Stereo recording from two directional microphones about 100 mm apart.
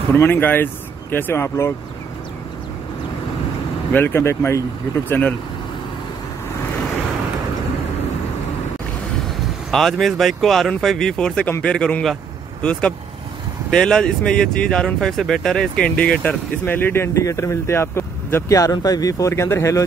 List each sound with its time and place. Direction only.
0.1 s speech: 20° left (ahead or behind)
3.9 s speech: 25° left (ahead or behind)
9.7 s a man's voice: 5° left (ahead or behind); by 19.8 s 30° left (ahead or behind)